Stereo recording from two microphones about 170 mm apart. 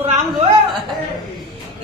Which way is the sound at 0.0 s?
40° right (ahead or behind).